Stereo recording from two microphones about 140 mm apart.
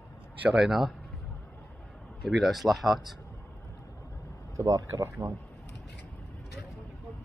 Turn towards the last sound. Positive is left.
turn(degrees=-25)  # may be behind; listen again after turning